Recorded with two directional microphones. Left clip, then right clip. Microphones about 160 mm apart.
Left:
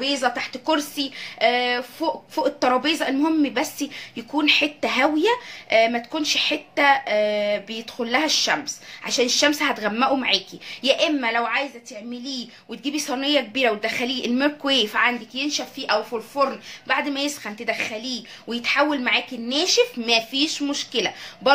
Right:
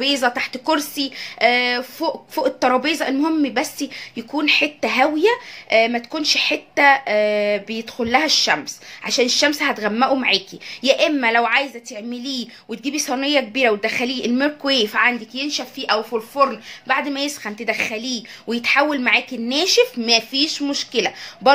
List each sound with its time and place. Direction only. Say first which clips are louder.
0.0 s speech: right 4 dB; 45° right (ahead or behind)
20.0 s speech: right 3 dB; 30° right (ahead or behind)